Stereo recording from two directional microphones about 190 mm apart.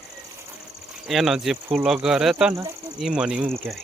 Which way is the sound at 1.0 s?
Centre (ahead or behind).